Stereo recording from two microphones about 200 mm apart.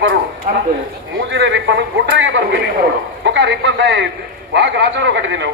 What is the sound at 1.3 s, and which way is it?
A man's voice, 65° right (ahead or behind).